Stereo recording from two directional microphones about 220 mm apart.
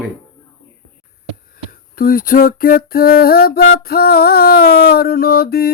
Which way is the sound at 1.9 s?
40° left (ahead or behind).